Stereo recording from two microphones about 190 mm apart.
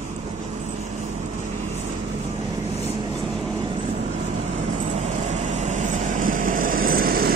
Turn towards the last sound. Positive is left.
turn(degrees=-50)  # may be behind; listen again after turning